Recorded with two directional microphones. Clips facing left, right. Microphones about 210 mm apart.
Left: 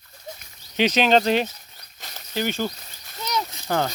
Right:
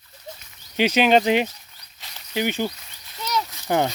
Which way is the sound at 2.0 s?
45° left (ahead or behind).